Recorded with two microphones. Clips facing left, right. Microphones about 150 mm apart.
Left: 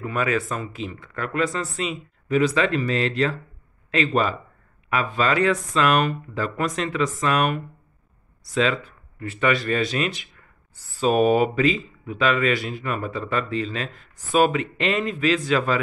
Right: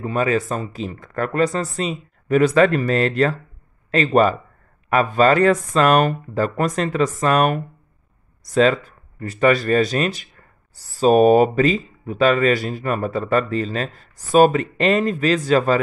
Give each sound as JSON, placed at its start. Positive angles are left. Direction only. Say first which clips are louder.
{"t": 0.0, "sound": "speech", "louder": "right 4 dB", "side_deg": -30}